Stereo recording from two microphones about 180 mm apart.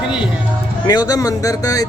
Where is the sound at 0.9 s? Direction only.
20° left (ahead or behind).